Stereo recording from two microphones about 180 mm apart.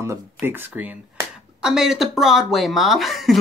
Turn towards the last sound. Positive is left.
turn(degrees=0)  # may be behind; listen again after turning